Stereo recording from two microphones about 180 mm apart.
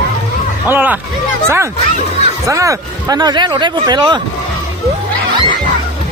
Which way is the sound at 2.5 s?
15° right (ahead or behind).